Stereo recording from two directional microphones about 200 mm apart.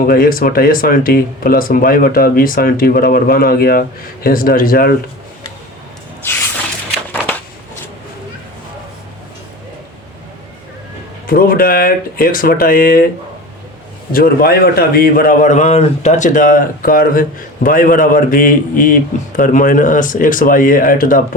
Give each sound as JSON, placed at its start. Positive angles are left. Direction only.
{"t": 0.1, "sound": "a man's voice", "side_deg": 45}
{"t": 6.2, "sound": "spray", "side_deg": 10}
{"t": 11.3, "sound": "a man's voice", "side_deg": 45}
{"t": 14.1, "sound": "a man's voice", "side_deg": 45}